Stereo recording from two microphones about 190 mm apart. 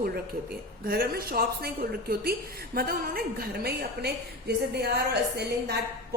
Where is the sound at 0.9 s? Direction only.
55° right (ahead or behind).